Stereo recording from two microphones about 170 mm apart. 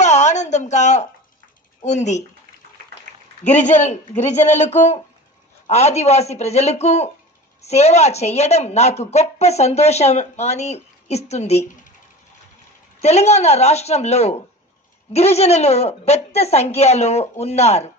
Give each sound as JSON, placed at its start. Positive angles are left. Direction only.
{"t": 0.0, "sound": "a sound", "side_deg": 45}
{"t": 1.8, "sound": "a man's voice", "side_deg": 45}
{"t": 3.4, "sound": "a man's voice", "side_deg": 45}
{"t": 13.0, "sound": "a woman's voice", "side_deg": 40}